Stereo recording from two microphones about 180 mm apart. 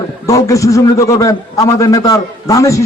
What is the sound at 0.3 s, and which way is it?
A man's voice, 20° left (ahead or behind).